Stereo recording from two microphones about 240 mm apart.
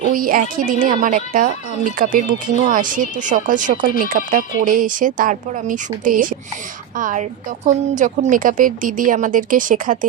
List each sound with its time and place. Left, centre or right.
0.1 s speech: right